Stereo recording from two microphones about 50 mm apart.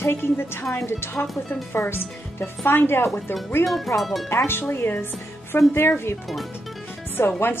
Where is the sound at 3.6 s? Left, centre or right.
Centre.